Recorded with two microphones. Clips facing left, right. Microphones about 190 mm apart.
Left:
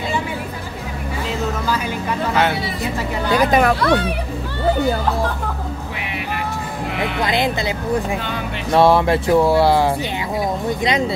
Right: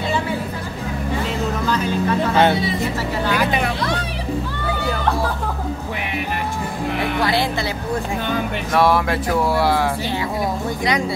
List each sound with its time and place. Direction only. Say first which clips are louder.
1.7 s music: right 1 dB; 10° left (ahead or behind)
2.3 s speech: right 3 dB; 25° right (ahead or behind)
3.5 s speech: left 7 dB; 60° left (ahead or behind)
7.2 s speech: left 2 dB; 20° left (ahead or behind)
8.7 s speech: left 4 dB; 25° left (ahead or behind)